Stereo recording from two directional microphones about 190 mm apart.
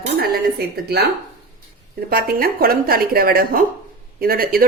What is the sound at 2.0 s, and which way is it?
A woman's voice, 50° right (ahead or behind).